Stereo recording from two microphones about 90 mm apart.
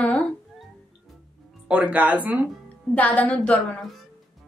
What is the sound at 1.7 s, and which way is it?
Speech, 15° right (ahead or behind).